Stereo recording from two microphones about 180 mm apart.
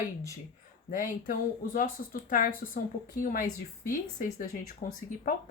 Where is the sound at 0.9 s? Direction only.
50° left (ahead or behind).